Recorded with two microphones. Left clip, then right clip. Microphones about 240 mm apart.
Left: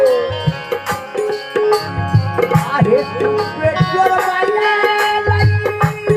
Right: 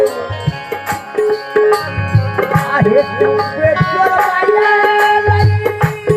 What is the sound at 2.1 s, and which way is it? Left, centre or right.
Music, right.